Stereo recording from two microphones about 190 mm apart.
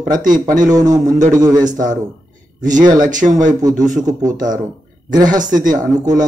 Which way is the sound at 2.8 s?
20° right (ahead or behind).